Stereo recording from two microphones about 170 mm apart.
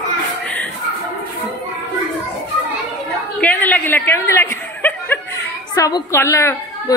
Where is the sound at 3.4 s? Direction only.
10° left (ahead or behind).